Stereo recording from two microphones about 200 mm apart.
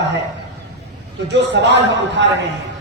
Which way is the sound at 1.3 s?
60° right (ahead or behind).